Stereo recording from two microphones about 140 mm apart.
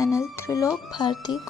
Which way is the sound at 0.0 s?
20° left (ahead or behind).